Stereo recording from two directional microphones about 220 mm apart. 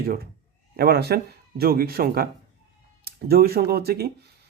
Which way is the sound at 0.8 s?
45° right (ahead or behind).